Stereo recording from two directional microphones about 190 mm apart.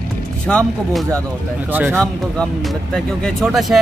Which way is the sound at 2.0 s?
5° left (ahead or behind).